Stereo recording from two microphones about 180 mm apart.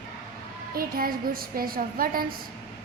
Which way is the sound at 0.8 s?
55° right (ahead or behind).